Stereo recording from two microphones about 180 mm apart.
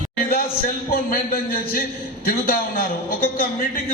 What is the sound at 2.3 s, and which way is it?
A man's voice, 55° left (ahead or behind).